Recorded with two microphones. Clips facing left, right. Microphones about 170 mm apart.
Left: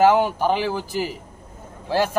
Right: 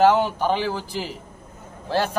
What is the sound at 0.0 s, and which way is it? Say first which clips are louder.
A man's voice: left 1 dB; 10° left (ahead or behind).